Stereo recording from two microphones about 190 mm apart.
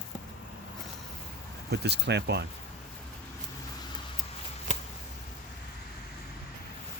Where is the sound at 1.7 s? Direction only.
60° right (ahead or behind).